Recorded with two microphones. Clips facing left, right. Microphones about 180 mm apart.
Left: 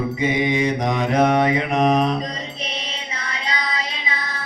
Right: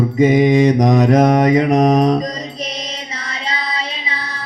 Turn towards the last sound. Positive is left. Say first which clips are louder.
# right 2 dB
turn(degrees=-35)  # may be behind; listen again after turning